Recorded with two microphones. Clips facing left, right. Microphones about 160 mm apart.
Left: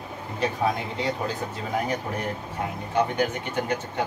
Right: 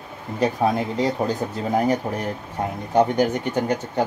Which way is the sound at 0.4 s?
40° right (ahead or behind).